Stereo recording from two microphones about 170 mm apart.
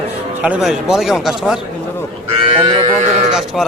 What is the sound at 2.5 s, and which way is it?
Sheep, 35° right (ahead or behind).